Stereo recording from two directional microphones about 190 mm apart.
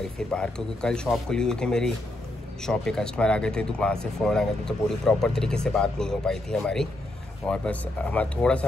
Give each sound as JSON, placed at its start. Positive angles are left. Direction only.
{"t": 0.0, "sound": "speech", "side_deg": 5}